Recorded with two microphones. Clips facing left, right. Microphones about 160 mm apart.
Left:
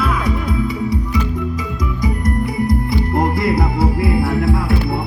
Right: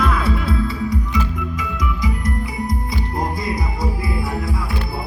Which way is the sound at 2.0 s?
55° left (ahead or behind).